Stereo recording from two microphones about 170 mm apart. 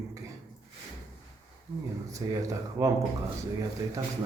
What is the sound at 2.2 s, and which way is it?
Speech, 25° right (ahead or behind).